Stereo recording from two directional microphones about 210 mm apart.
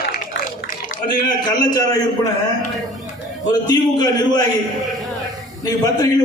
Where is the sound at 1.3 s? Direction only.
20° left (ahead or behind).